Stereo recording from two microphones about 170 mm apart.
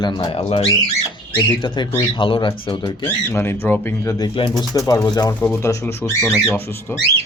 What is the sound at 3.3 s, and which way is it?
Speech, 15° left (ahead or behind).